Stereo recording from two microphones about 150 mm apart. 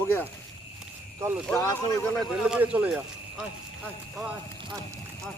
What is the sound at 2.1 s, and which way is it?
Speech, centre (ahead or behind).